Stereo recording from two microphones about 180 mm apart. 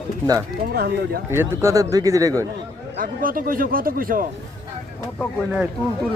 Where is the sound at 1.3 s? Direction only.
15° right (ahead or behind).